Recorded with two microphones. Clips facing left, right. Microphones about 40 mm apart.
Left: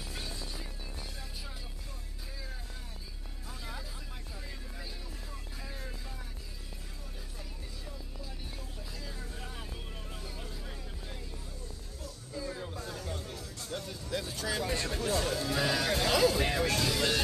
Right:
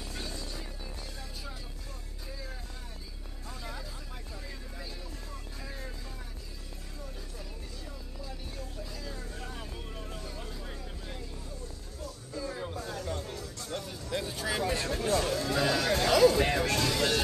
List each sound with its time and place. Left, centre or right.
3.4 s music: centre
5.6 s vehicle: centre
8.2 s vehicle: centre
10.4 s vehicle: centre
12.4 s music: centre
14.1 s vehicle: centre
14.6 s a sound: centre